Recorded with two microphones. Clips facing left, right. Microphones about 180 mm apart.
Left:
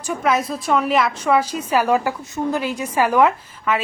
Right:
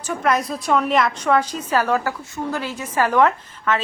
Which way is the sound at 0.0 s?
5° left (ahead or behind).